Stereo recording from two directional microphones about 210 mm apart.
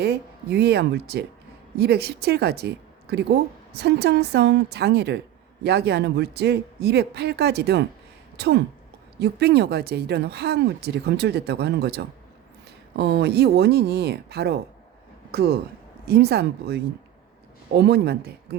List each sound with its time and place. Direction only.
0.0 s speech: 50° right (ahead or behind)